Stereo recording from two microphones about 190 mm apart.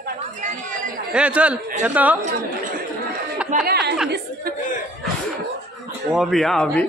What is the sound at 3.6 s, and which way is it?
Speech, 60° right (ahead or behind).